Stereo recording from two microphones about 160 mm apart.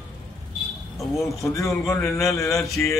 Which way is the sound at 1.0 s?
Centre (ahead or behind).